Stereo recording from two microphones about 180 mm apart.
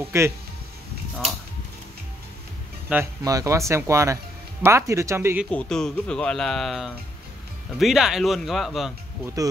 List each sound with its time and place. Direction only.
0.1 s speech: 15° right (ahead or behind)
2.9 s speech: 15° right (ahead or behind)
5.5 s speech: 5° left (ahead or behind)
9.2 s speech: 20° right (ahead or behind)